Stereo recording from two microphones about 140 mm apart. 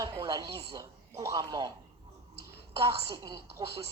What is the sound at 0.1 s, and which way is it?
Speech, 35° right (ahead or behind).